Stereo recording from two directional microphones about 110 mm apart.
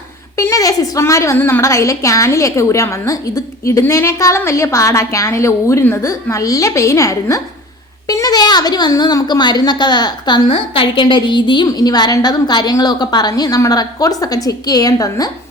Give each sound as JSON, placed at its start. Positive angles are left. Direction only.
{"t": 0.3, "sound": "a woman's voice", "side_deg": 30}